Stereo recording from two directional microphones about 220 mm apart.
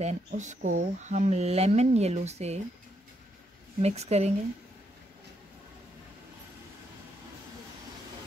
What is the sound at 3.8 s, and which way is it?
Speech, 30° right (ahead or behind).